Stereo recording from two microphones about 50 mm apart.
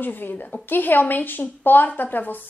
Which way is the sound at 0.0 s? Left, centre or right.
Left.